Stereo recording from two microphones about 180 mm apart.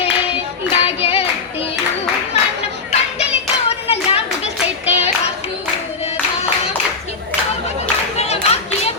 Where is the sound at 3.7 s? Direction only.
35° left (ahead or behind).